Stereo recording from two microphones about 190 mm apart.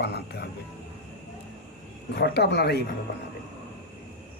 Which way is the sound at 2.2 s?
60° left (ahead or behind).